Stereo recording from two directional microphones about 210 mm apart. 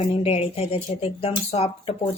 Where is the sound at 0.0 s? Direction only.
30° left (ahead or behind).